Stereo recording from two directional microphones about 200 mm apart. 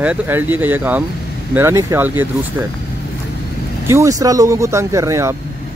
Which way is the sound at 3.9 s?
15° right (ahead or behind).